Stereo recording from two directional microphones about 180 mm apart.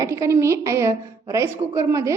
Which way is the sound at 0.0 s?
15° right (ahead or behind).